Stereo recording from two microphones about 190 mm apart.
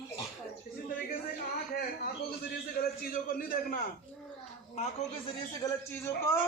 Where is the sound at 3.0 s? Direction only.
50° left (ahead or behind).